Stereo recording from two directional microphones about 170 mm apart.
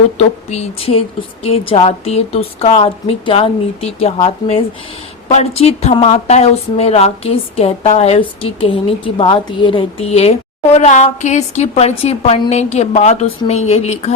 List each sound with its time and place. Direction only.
0.2 s a woman's voice: 35° left (ahead or behind)